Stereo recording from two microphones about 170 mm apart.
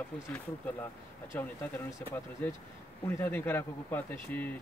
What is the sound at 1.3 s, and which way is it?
Speech, 15° left (ahead or behind).